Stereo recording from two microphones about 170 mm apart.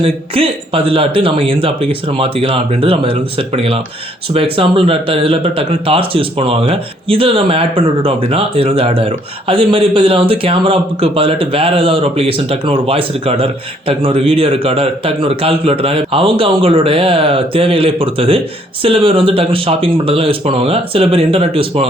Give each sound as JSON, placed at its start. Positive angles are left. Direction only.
{"t": 0.0, "sound": "speech", "side_deg": -35}